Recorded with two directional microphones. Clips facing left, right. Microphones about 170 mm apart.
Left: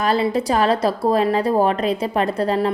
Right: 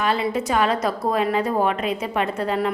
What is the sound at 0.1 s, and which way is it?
A woman's voice, 35° left (ahead or behind).